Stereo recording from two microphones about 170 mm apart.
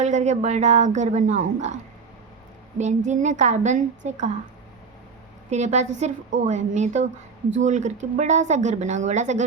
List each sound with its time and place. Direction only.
0.0 s a woman's voice: 45° right (ahead or behind)
2.7 s a woman's voice: 45° right (ahead or behind)
5.5 s a woman's voice: 40° right (ahead or behind)